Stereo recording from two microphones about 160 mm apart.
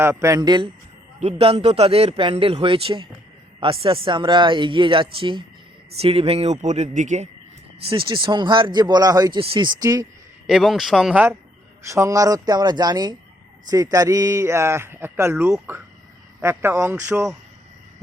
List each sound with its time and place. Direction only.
0.0 s speech: 15° right (ahead or behind)
1.2 s speech: 40° right (ahead or behind)
7.9 s speech: 30° right (ahead or behind)
10.4 s a man's voice: centre (ahead or behind)